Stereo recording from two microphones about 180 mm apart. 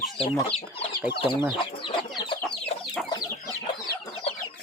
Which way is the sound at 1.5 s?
30° left (ahead or behind).